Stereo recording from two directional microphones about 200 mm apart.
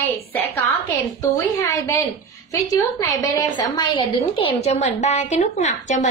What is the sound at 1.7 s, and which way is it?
A woman's voice, 15° left (ahead or behind).